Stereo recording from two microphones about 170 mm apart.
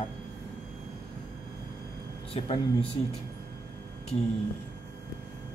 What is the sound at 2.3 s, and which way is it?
Speech, 35° left (ahead or behind).